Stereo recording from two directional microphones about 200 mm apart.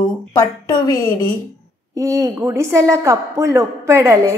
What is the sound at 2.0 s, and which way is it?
A woman's voice, 15° right (ahead or behind).